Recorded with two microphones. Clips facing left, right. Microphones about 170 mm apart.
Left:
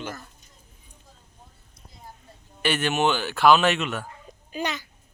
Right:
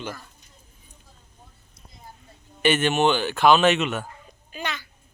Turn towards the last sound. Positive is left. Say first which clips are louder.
# left 3 dB
turn(degrees=40)  # may be behind; listen again after turning